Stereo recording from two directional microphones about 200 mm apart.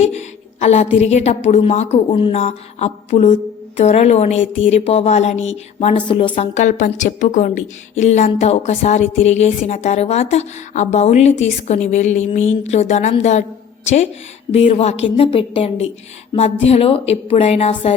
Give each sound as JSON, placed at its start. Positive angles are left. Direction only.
{"t": 0.0, "sound": "a sound", "side_deg": 35}
{"t": 0.9, "sound": "a woman's voice", "side_deg": 35}
{"t": 14.5, "sound": "a woman's voice", "side_deg": 30}